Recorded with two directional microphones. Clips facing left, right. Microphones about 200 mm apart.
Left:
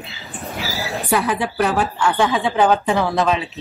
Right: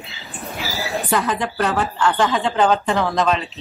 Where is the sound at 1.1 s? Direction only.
15° left (ahead or behind).